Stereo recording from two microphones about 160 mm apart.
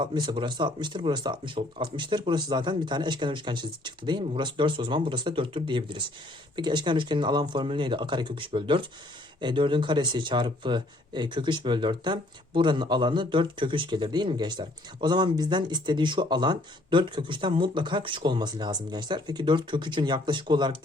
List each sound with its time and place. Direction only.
0.0 s speech: 30° right (ahead or behind)